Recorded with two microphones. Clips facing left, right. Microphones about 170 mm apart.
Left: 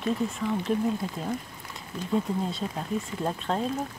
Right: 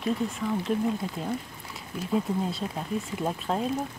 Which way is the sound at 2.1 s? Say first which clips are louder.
Even; 5° right (ahead or behind).